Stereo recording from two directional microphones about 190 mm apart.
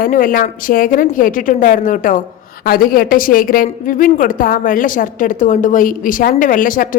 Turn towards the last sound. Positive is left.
turn(degrees=45)  # may be behind; listen again after turning